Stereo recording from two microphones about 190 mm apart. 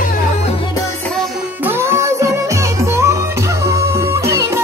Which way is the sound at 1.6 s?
15° right (ahead or behind).